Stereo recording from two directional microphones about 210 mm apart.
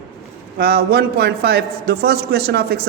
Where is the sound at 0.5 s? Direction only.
50° right (ahead or behind).